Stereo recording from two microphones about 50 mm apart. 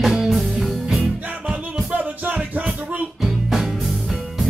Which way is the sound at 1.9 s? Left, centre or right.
Right.